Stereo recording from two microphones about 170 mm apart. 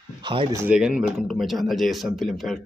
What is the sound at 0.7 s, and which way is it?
Speech, 5° right (ahead or behind).